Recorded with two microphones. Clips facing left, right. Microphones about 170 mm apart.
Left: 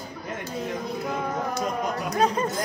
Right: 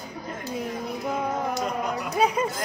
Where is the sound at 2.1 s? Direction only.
10° right (ahead or behind).